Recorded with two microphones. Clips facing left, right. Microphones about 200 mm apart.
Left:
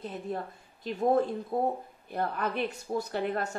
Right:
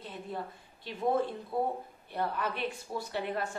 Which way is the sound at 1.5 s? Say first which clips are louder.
Left 2 dB; 45° left (ahead or behind).